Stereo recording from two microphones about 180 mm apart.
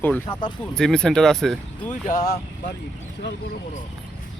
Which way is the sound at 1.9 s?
50° left (ahead or behind).